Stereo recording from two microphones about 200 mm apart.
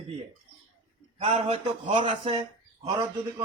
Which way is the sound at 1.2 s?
30° right (ahead or behind).